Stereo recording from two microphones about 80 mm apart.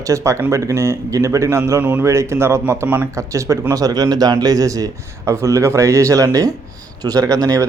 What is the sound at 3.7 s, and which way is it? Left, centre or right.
A man's voice, right.